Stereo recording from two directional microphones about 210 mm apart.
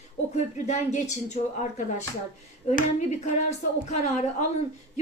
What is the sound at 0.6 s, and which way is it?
Speech, 35° left (ahead or behind).